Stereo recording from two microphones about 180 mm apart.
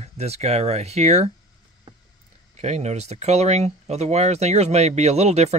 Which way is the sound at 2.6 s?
40° right (ahead or behind).